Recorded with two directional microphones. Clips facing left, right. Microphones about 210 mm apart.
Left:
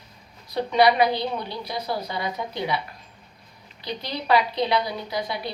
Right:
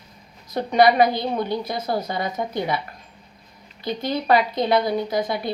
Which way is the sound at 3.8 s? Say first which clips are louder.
Right 5 dB; 45° right (ahead or behind).